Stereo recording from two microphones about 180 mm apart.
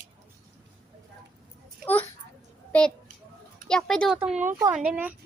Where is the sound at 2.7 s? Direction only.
5° left (ahead or behind).